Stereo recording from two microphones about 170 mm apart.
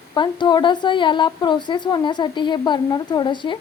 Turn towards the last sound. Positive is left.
turn(degrees=30)  # may be behind; listen again after turning